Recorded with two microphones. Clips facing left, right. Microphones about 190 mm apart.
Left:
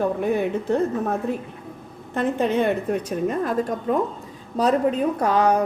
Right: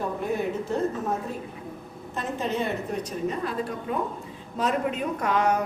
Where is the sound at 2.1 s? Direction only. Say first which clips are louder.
Left 7 dB; 60° left (ahead or behind).